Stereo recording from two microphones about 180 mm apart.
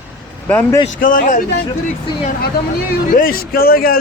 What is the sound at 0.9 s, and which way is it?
Speech, 50° left (ahead or behind).